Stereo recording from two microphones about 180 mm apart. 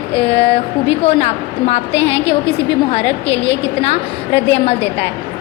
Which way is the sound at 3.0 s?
80° left.